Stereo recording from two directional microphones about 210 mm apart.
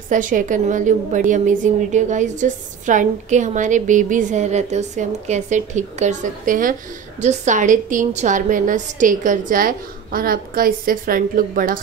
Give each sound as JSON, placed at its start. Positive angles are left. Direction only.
{"t": 0.1, "sound": "a woman's voice", "side_deg": -40}